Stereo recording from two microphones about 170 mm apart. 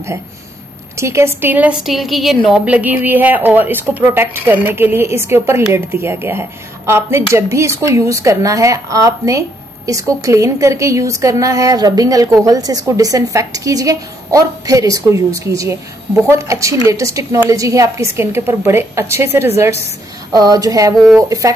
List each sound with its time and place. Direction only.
0.9 s a woman's voice: 15° right (ahead or behind)